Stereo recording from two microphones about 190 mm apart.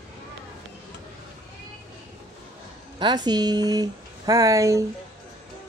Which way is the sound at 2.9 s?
25° right (ahead or behind).